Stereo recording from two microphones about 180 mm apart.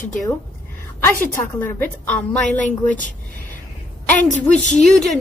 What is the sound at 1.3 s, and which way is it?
A woman's voice, 10° left (ahead or behind).